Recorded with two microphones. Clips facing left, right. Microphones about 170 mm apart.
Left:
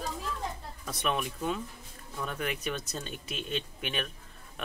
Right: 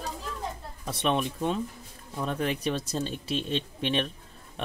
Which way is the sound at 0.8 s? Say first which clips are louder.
Right 5 dB; 30° right (ahead or behind).